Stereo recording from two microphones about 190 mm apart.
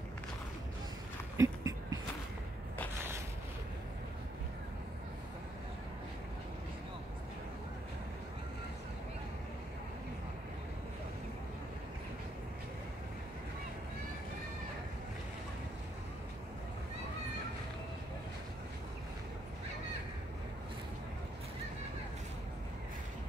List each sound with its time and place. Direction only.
1.3 s dog: 15° right (ahead or behind)